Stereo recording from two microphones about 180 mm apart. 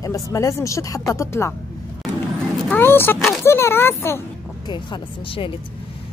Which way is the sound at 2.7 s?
10° left (ahead or behind).